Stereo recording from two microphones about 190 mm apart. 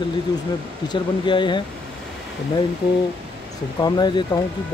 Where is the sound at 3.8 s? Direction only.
20° left (ahead or behind).